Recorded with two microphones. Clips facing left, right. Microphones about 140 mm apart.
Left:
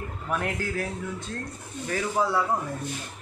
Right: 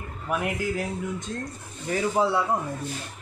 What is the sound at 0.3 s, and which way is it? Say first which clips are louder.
Speech: right 2 dB; 10° right (ahead or behind).